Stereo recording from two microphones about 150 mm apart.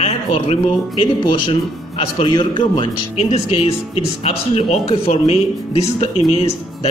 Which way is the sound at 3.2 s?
45° left (ahead or behind).